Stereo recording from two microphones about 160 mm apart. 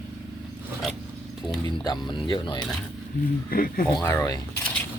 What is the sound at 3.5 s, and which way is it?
Speech, 65° left (ahead or behind).